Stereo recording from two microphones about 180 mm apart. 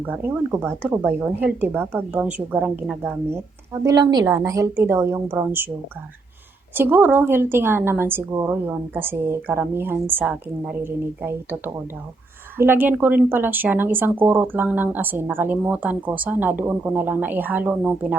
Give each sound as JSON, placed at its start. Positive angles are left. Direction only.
{"t": 0.0, "sound": "speech", "side_deg": -10}
{"t": 3.8, "sound": "speech", "side_deg": -20}
{"t": 6.7, "sound": "speech", "side_deg": -10}